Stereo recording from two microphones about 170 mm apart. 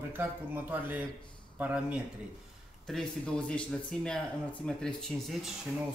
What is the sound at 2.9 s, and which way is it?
Speech, 5° left (ahead or behind).